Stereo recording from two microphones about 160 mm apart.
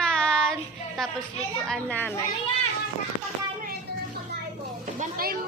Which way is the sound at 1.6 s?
5° left (ahead or behind).